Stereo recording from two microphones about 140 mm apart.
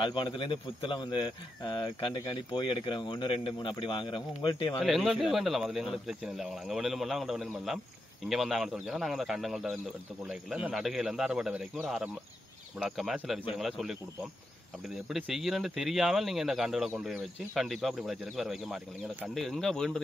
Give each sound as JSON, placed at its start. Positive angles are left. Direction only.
{"t": 0.0, "sound": "speech", "side_deg": 35}
{"t": 4.8, "sound": "speech", "side_deg": -5}
{"t": 15.0, "sound": "speech", "side_deg": -5}
{"t": 17.6, "sound": "speech", "side_deg": 0}